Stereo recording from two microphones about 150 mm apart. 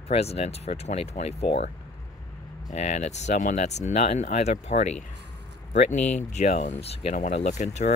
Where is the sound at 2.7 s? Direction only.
50° left (ahead or behind).